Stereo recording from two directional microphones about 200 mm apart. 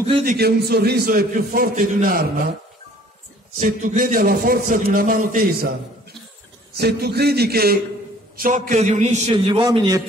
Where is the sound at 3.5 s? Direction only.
40° right (ahead or behind).